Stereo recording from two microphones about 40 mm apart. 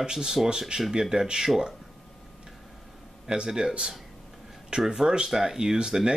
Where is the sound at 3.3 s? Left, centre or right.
Centre.